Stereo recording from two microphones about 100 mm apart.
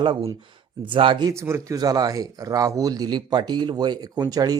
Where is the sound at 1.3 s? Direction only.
25° right (ahead or behind).